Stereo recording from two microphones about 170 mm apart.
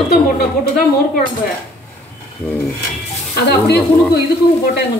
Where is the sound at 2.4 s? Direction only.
15° left (ahead or behind).